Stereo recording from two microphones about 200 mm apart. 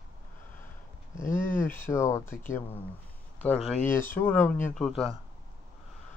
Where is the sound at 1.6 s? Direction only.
10° left (ahead or behind).